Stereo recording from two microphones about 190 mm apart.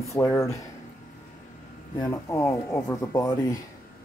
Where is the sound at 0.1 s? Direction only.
15° left (ahead or behind).